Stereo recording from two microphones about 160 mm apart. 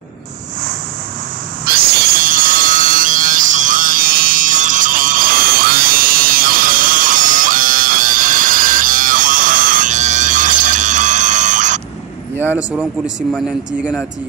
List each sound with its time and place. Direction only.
1.7 s wood: 65° right (ahead or behind); by 11.8 s 50° right (ahead or behind)
12.5 s speech: 5° right (ahead or behind)